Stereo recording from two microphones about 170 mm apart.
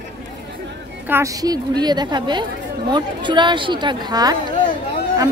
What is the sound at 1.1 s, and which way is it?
A woman's voice, 15° right (ahead or behind).